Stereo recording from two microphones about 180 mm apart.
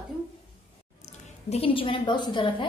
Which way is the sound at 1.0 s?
35° left (ahead or behind).